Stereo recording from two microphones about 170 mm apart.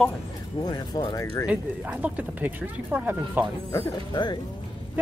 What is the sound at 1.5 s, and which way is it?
Speech, 5° right (ahead or behind).